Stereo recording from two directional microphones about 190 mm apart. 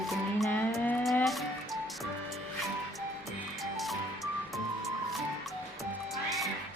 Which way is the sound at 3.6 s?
Centre (ahead or behind).